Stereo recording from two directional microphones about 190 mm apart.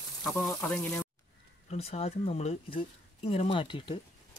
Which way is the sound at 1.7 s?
30° left (ahead or behind).